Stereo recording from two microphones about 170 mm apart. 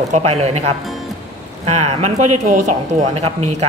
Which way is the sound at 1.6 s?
40° right (ahead or behind).